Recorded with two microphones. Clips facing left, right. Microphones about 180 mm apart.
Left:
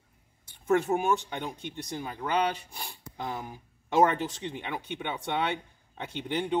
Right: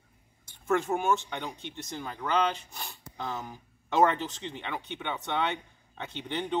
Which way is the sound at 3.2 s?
15° left (ahead or behind).